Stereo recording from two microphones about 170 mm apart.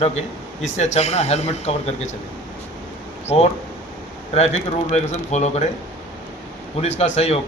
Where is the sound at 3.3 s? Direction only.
35° left (ahead or behind).